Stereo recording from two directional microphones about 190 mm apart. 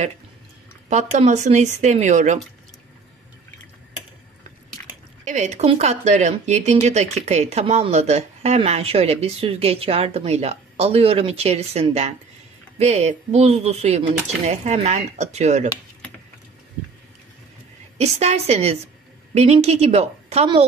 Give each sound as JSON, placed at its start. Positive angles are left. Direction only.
{"t": 0.8, "sound": "speech", "side_deg": -40}
{"t": 5.2, "sound": "speech", "side_deg": -40}
{"t": 17.9, "sound": "speech", "side_deg": -35}